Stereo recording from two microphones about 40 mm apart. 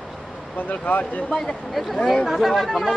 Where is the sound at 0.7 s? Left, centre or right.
Left.